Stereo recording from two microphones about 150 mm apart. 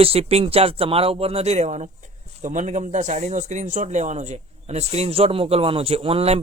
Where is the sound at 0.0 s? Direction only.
40° right (ahead or behind).